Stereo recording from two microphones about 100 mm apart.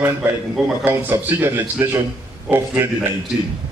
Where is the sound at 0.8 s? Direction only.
20° right (ahead or behind).